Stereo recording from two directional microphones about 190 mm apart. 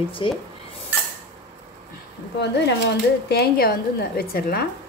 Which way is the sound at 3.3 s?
50° left (ahead or behind).